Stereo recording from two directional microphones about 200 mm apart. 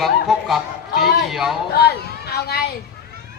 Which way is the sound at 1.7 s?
55° left (ahead or behind).